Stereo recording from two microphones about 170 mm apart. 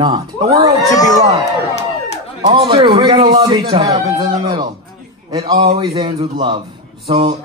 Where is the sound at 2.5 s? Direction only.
30° right (ahead or behind).